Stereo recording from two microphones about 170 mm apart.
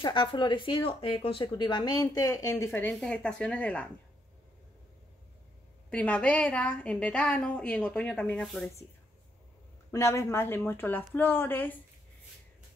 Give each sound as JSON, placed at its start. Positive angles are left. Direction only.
{"t": 0.0, "sound": "a woman's voice", "side_deg": 30}
{"t": 5.9, "sound": "a woman's voice", "side_deg": 5}
{"t": 9.8, "sound": "a woman's voice", "side_deg": 15}